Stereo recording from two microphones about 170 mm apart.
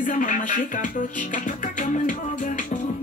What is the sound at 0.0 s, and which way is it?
Music, 50° left (ahead or behind).